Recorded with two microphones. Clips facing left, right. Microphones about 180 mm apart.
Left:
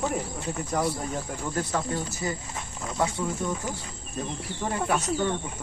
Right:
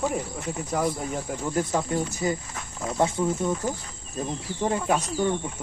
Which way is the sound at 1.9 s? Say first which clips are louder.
Right 5 dB; 20° right (ahead or behind).